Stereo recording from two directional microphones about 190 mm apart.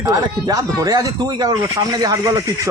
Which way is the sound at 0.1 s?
20° right (ahead or behind).